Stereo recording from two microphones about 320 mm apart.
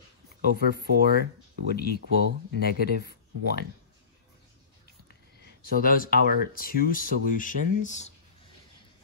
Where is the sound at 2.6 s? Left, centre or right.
Left.